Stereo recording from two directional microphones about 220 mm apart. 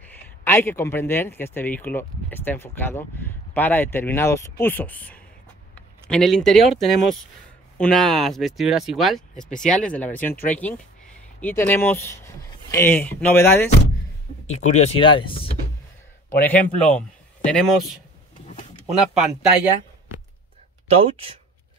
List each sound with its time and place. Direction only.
0.4 s speech: 10° left (ahead or behind)
7.7 s speech: 5° left (ahead or behind)
14.5 s speech: 30° left (ahead or behind)
16.3 s speech: 10° left (ahead or behind)
18.9 s speech: centre (ahead or behind)
21.0 s speech: 25° right (ahead or behind)